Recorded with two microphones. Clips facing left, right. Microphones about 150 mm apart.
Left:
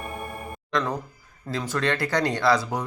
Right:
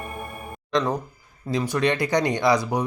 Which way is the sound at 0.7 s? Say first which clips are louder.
Right 3 dB; 20° right (ahead or behind).